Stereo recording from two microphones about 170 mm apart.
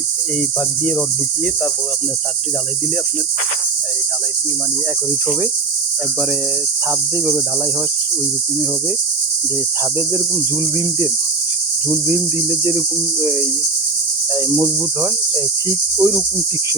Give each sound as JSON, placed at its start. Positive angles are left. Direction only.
{"t": 11.9, "sound": "cricket", "side_deg": -15}
{"t": 14.3, "sound": "speech", "side_deg": -20}